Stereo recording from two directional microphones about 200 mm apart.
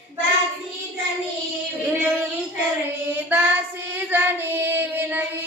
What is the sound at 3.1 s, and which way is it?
Child singing, 10° right (ahead or behind).